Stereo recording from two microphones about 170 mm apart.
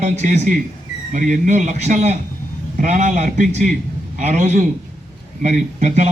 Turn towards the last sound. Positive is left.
turn(degrees=-40)  # may be behind; listen again after turning